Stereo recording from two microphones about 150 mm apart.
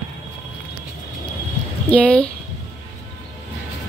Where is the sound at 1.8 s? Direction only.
10° left (ahead or behind).